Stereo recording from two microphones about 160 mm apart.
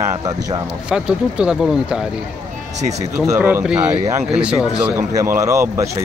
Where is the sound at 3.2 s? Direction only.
10° right (ahead or behind).